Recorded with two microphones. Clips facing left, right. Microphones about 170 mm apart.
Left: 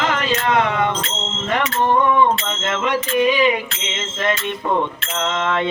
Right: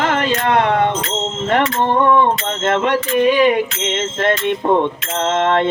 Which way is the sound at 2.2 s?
55° right (ahead or behind).